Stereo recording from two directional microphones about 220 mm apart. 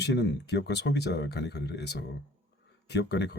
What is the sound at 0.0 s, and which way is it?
Speech, 50° left (ahead or behind).